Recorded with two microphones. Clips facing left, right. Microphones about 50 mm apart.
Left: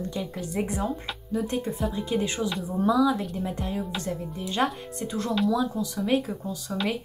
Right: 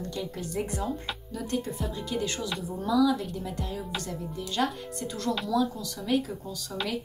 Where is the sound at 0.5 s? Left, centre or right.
Left.